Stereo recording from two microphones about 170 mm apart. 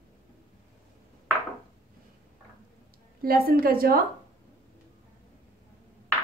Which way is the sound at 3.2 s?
60° right (ahead or behind).